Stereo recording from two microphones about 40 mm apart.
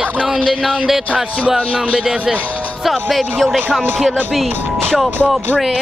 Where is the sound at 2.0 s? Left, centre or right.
Right.